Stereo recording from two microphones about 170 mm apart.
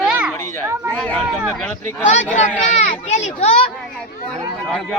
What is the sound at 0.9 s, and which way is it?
Speech, 5° left (ahead or behind).